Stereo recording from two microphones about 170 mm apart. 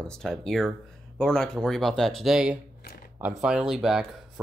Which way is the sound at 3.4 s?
5° right (ahead or behind).